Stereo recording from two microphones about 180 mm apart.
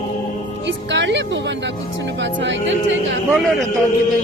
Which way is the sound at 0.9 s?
80° right.